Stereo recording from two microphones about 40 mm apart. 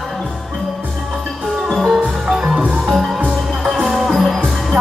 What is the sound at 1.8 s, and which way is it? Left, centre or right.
Music, centre.